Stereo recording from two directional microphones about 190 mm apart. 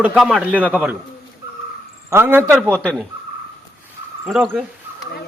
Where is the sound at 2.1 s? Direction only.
15° right (ahead or behind).